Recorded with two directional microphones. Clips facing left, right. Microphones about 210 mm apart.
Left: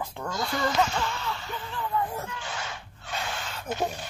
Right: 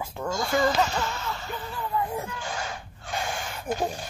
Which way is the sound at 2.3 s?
45° right (ahead or behind).